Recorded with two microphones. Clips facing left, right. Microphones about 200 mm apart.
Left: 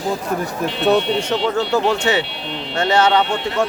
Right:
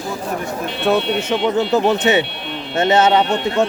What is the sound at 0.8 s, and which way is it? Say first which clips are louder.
Speech: left 1 dB; 5° right (ahead or behind).